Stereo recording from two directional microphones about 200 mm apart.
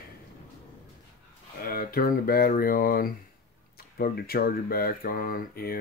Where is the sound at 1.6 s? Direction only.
45° left (ahead or behind).